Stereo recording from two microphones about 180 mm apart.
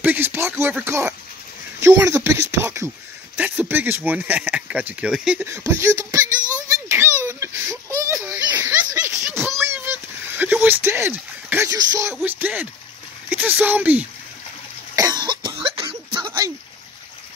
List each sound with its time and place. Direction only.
0.0 s speech: 10° right (ahead or behind)
6.7 s a sound: 15° right (ahead or behind)
12.1 s speech: 5° right (ahead or behind)
15.0 s cough: 20° right (ahead or behind)
16.3 s splash: 15° right (ahead or behind)